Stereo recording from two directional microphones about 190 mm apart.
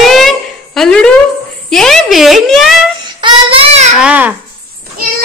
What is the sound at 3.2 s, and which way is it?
Child singing, 25° right (ahead or behind).